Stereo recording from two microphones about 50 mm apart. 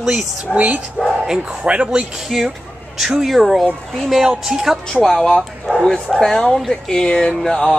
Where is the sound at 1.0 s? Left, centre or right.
Centre.